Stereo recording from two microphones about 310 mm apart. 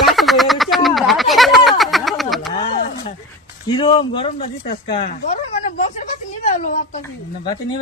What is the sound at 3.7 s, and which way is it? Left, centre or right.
Speech, centre.